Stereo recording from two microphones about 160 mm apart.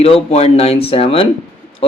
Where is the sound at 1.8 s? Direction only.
35° left (ahead or behind).